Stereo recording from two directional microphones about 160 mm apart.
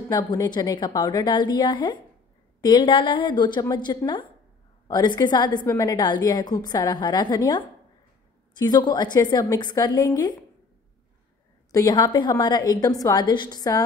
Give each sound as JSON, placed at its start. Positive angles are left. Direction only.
{"t": 0.1, "sound": "a woman's voice", "side_deg": 25}
{"t": 11.7, "sound": "a woman's voice", "side_deg": 25}